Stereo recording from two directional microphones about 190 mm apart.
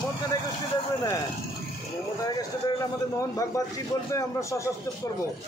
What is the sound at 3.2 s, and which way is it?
Speech, 20° left (ahead or behind).